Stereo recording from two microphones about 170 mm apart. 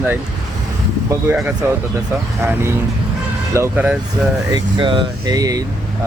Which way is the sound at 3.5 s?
10° right (ahead or behind).